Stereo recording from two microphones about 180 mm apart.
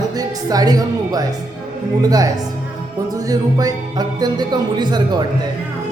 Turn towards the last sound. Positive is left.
turn(degrees=-25)  # may be behind; listen again after turning